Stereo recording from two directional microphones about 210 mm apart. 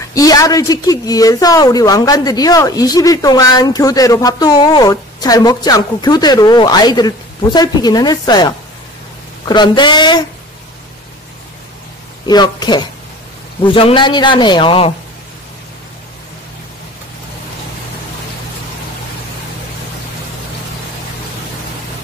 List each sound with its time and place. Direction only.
0.1 s a woman's voice: 15° left (ahead or behind)
12.3 s a man's voice: 20° left (ahead or behind)